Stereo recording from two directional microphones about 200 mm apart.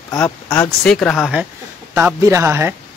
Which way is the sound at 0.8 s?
5° left (ahead or behind).